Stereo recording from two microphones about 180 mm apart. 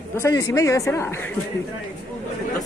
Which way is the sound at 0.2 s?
15° left (ahead or behind).